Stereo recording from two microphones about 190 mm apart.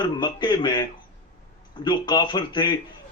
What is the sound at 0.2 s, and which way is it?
A man's voice, 25° left (ahead or behind).